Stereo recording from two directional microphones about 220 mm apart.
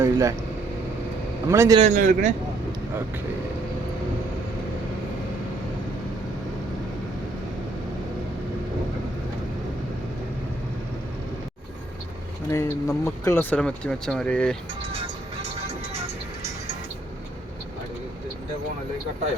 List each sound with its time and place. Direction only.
0.0 s speech: 15° right (ahead or behind)
1.5 s a man's voice: 15° right (ahead or behind)
1.8 s a man's voice: 35° right (ahead or behind)
12.5 s speech: 15° left (ahead or behind)
14.9 s music: 25° right (ahead or behind)